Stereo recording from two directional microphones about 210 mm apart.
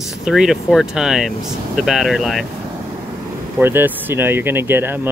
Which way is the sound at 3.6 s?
10° right (ahead or behind).